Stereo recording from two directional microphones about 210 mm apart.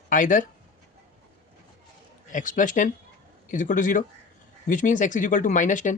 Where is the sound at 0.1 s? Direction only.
40° left (ahead or behind).